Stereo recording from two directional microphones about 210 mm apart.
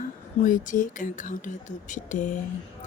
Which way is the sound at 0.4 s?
40° left (ahead or behind).